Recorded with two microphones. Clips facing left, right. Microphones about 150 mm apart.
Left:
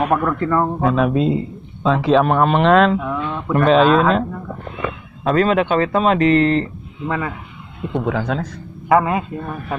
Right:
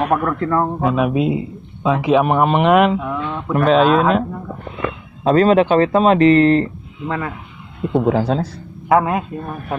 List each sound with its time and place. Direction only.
0.0 s a man's voice: centre (ahead or behind)
3.0 s speech: centre (ahead or behind)
5.2 s speech: 35° right (ahead or behind)
7.1 s speech: 5° left (ahead or behind)
8.0 s speech: 35° right (ahead or behind)
8.8 s speech: centre (ahead or behind)